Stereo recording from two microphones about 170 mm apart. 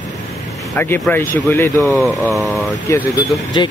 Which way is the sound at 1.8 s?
Centre (ahead or behind).